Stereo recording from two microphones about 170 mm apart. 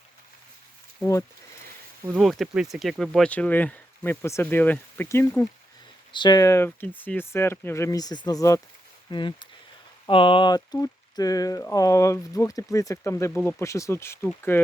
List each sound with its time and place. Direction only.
1.0 s speech: 20° left (ahead or behind)
2.1 s speech: centre (ahead or behind)